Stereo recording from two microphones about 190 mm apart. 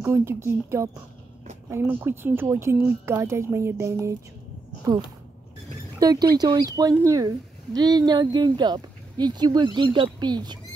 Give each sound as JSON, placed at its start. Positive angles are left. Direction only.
{"t": 0.0, "sound": "speech", "side_deg": -15}
{"t": 5.9, "sound": "speech", "side_deg": -20}